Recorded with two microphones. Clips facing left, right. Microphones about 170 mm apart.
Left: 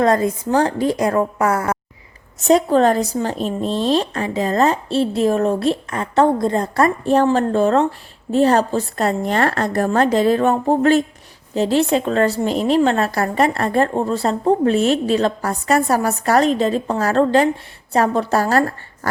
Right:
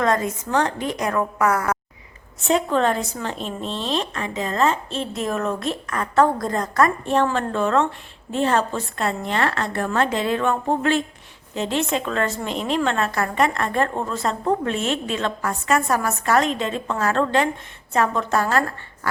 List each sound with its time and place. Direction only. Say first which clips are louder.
0.0 s a woman's voice: left 5 dB; 35° left (ahead or behind)